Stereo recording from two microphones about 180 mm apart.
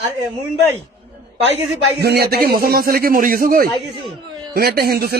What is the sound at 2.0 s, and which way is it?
Speech, 65° right (ahead or behind).